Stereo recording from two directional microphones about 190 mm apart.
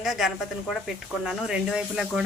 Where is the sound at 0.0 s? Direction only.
Centre (ahead or behind).